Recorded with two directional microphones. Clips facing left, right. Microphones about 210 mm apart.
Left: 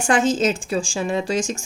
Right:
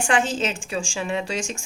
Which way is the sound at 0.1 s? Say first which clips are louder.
Left 6 dB; 40° left (ahead or behind).